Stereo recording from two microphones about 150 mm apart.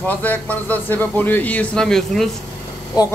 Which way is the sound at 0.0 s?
10° left (ahead or behind).